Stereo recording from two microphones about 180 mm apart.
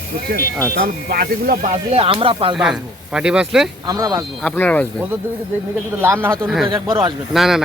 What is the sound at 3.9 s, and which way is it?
Speech, 20° right (ahead or behind).